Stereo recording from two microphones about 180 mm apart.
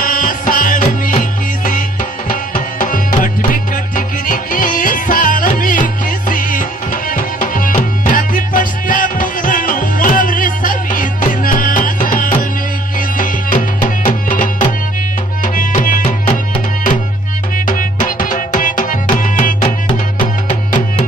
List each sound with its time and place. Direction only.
0.0 s music: 50° left (ahead or behind)
17.6 s music: 50° left (ahead or behind)
19.6 s music: 25° left (ahead or behind)